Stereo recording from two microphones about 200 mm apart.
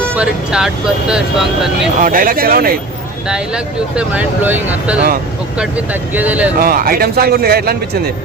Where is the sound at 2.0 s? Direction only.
45° right (ahead or behind).